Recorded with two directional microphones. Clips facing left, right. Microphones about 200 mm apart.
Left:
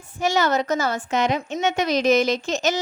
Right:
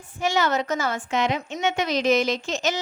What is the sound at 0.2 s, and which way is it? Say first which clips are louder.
A woman's voice: left 2 dB; 40° left (ahead or behind).